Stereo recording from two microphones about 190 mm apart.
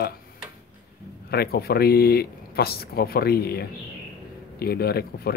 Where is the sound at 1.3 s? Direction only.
55° left (ahead or behind).